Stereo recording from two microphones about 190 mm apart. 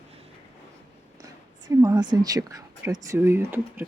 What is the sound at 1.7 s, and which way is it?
Speech, 15° right (ahead or behind).